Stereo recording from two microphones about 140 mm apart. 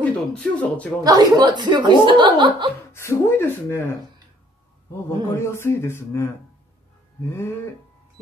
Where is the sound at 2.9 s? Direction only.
20° left (ahead or behind).